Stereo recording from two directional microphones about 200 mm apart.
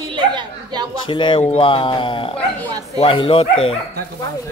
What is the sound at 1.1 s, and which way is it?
Speech, 25° left (ahead or behind).